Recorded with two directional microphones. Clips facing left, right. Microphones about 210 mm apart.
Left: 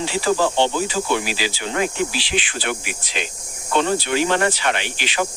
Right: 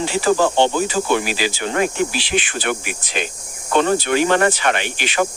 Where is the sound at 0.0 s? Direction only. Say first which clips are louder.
Right 3 dB; 50° right (ahead or behind).